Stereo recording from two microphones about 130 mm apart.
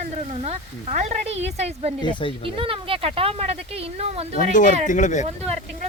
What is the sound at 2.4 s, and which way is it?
Speech, 45° right (ahead or behind).